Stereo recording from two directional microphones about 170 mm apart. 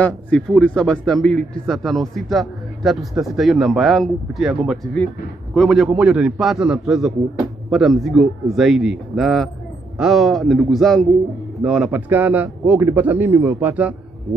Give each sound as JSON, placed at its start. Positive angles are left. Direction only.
{"t": 0.0, "sound": "a man's voice", "side_deg": 5}